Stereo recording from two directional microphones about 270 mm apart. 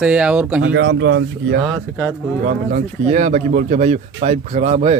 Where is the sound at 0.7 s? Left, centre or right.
Right.